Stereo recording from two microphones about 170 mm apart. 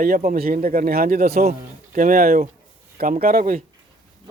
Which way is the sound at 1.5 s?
50° right (ahead or behind).